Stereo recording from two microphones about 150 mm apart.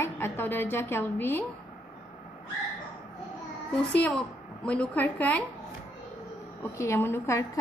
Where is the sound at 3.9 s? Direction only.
10° left (ahead or behind).